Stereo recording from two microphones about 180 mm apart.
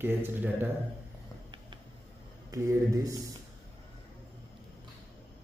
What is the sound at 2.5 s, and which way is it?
Speech, 20° right (ahead or behind).